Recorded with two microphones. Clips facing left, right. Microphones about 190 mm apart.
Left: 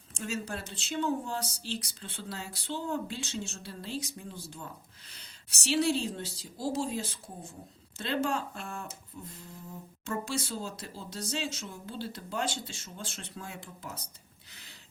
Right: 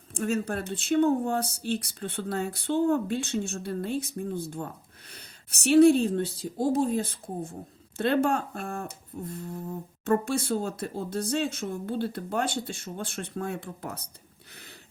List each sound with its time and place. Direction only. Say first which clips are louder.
0.1 s speech: right 8 dB; 55° right (ahead or behind)